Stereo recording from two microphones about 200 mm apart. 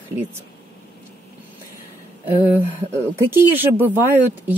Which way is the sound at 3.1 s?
10° right (ahead or behind).